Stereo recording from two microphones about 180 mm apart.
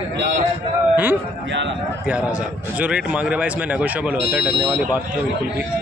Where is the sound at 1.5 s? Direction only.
85° right.